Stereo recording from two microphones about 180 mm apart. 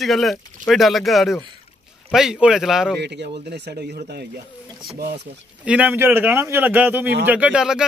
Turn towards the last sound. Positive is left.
turn(degrees=-5)  # may be behind; listen again after turning